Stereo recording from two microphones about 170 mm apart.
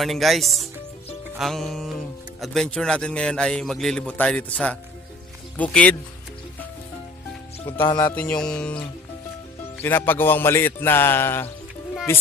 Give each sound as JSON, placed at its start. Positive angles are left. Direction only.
{"t": 0.0, "sound": "a man's voice", "side_deg": 0}
{"t": 1.4, "sound": "music", "side_deg": 0}
{"t": 2.4, "sound": "a man's voice", "side_deg": 0}
{"t": 5.6, "sound": "music", "side_deg": 5}
{"t": 7.8, "sound": "music", "side_deg": 25}
{"t": 8.1, "sound": "music", "side_deg": 5}